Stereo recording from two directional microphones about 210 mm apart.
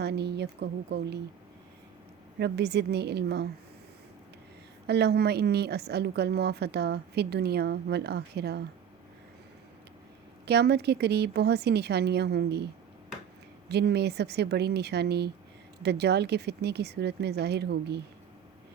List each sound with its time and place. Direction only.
0.0 s a woman's voice: 50° right (ahead or behind)
2.4 s a woman's voice: 50° right (ahead or behind)
4.9 s a woman's voice: 50° right (ahead or behind)
10.4 s a woman's voice: 50° right (ahead or behind)
13.7 s a woman's voice: 50° right (ahead or behind)